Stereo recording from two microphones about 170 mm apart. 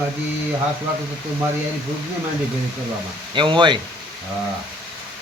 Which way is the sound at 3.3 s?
25° right (ahead or behind).